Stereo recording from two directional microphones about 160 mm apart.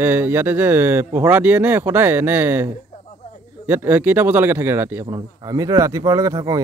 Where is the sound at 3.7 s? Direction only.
15° right (ahead or behind).